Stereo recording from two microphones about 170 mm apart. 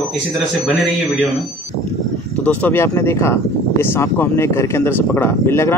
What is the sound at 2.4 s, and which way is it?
Speech, 10° left (ahead or behind).